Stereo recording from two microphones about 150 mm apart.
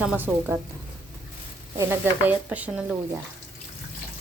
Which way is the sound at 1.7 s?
20° right (ahead or behind).